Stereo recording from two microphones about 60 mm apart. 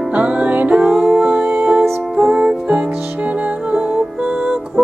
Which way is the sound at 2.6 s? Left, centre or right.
Right.